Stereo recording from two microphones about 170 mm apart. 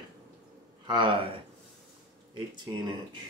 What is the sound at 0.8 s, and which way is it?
Speech, 25° right (ahead or behind).